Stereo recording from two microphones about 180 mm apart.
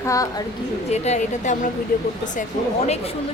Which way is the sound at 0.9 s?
40° left (ahead or behind).